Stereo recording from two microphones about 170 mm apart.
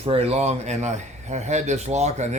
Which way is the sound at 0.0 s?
35° right (ahead or behind).